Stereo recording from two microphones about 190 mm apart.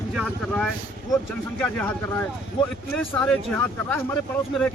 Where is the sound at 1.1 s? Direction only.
10° left (ahead or behind).